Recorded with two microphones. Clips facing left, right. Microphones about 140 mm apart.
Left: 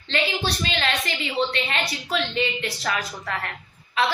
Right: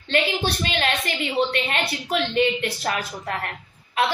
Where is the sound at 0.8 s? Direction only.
45° right (ahead or behind).